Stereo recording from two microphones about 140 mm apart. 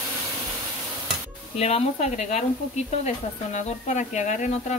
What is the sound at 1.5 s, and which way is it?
Speech, 50° left (ahead or behind).